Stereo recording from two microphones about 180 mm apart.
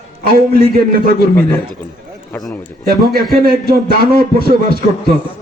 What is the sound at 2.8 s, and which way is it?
A man's voice, 55° right (ahead or behind).